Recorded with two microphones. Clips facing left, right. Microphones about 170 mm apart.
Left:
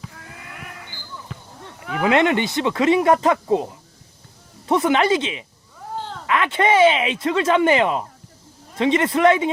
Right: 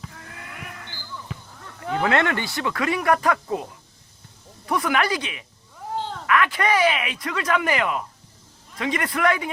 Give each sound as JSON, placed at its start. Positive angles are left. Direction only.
{"t": 0.0, "sound": "a sound", "side_deg": 0}
{"t": 1.3, "sound": "chop", "side_deg": 0}
{"t": 2.0, "sound": "speech", "side_deg": 15}